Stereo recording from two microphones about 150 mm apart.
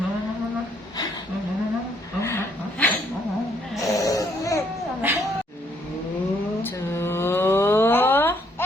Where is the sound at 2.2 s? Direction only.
15° left (ahead or behind).